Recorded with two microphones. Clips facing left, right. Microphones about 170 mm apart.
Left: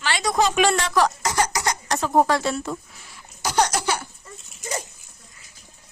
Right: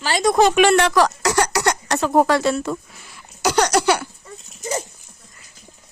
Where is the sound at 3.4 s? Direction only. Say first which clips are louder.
Right 5 dB; 85° right.